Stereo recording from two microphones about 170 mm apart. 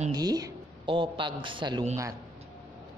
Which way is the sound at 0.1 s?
25° right (ahead or behind).